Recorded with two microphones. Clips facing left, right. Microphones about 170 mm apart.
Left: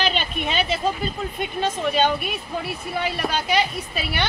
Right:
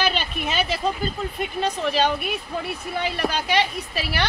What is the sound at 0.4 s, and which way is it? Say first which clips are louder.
A woman's voice: left 2 dB; centre (ahead or behind).